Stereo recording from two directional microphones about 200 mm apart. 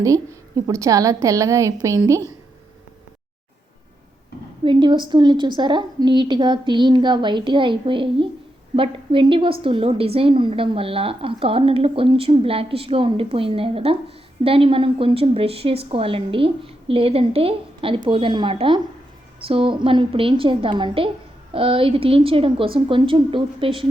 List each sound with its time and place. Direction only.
0.0 s a woman's voice: 15° right (ahead or behind)
4.6 s a woman's voice: 25° right (ahead or behind)